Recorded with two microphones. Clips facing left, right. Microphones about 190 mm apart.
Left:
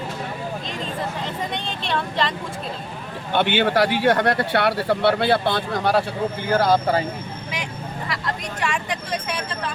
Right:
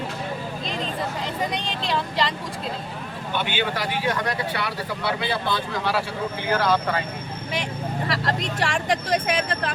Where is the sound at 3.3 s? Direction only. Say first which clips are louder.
Left 8 dB; 60° left (ahead or behind).